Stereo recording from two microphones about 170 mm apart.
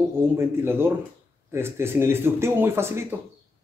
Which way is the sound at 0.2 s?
15° right (ahead or behind).